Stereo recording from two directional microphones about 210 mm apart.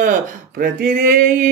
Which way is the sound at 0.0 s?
40° right (ahead or behind).